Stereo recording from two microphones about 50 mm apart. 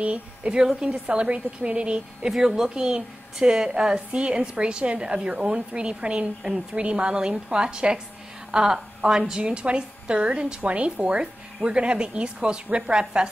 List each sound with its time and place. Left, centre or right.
0.0 s a woman's voice: right
2.2 s a woman's voice: centre